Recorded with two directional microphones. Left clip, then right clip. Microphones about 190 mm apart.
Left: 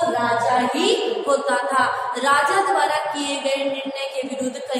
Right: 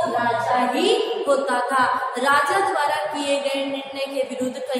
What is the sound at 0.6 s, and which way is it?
A woman's voice, 5° right (ahead or behind).